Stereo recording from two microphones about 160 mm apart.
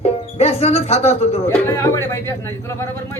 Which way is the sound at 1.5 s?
15° left (ahead or behind).